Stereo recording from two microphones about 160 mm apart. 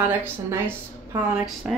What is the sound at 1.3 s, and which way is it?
Speech, centre (ahead or behind).